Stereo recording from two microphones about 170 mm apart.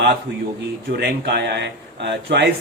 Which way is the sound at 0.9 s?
75° right (ahead or behind).